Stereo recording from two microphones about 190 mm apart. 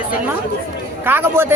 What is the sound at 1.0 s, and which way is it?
Speech, 10° right (ahead or behind).